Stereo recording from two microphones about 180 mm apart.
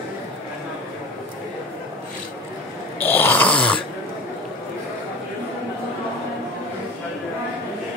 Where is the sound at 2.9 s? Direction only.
10° left (ahead or behind).